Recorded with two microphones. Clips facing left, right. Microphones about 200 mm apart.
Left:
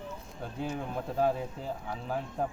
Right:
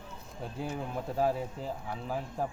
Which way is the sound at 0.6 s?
Centre (ahead or behind).